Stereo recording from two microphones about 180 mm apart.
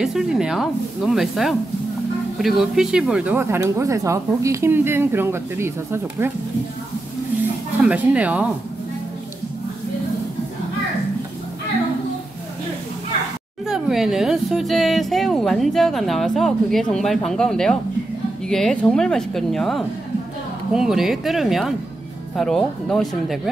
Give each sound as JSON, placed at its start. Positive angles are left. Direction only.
{"t": 0.0, "sound": "speech", "side_deg": 0}
{"t": 7.8, "sound": "speech", "side_deg": -5}
{"t": 13.7, "sound": "speech", "side_deg": 0}